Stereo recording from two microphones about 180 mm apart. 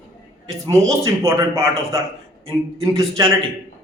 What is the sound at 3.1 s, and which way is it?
Speech, 15° right (ahead or behind).